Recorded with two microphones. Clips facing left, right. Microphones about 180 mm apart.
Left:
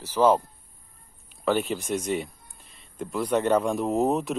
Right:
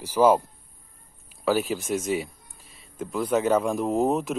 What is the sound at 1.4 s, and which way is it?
Speech, 5° right (ahead or behind).